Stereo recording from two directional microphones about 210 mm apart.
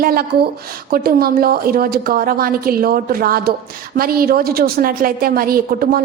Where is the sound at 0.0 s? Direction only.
45° right (ahead or behind).